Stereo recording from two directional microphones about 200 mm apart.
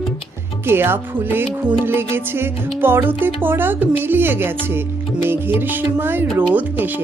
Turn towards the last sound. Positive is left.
turn(degrees=-10)  # may be behind; listen again after turning